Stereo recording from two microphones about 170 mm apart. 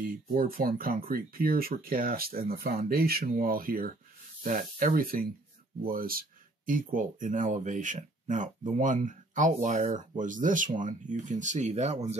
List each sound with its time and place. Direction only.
0.0 s speech: 55° right (ahead or behind)